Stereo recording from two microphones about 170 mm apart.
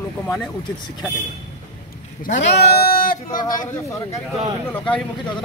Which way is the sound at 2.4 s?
75° left (ahead or behind).